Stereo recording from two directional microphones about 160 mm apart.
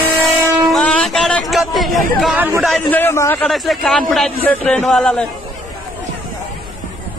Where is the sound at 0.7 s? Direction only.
5° left (ahead or behind).